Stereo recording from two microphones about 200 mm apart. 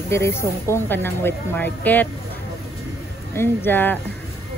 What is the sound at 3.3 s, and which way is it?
Speech, 10° left (ahead or behind).